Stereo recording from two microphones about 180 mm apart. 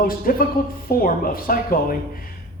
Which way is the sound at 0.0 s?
55° left (ahead or behind).